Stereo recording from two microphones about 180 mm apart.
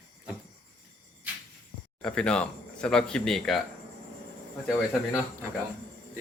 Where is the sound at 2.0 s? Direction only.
5° left (ahead or behind).